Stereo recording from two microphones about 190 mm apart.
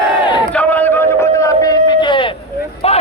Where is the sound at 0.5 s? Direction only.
10° left (ahead or behind); by 2.3 s 25° left (ahead or behind).